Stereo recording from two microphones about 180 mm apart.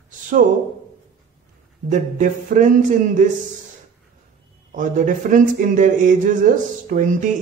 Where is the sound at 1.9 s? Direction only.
45° right (ahead or behind).